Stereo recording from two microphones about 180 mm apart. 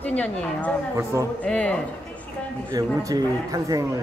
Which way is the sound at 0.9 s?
15° right (ahead or behind).